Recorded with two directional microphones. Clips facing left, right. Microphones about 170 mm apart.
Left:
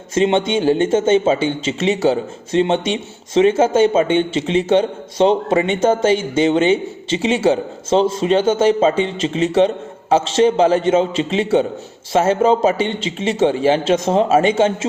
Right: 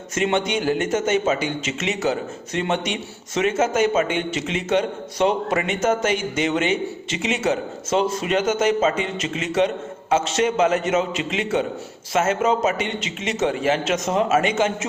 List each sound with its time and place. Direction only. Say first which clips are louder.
0.1 s speech: left 6 dB; 25° left (ahead or behind)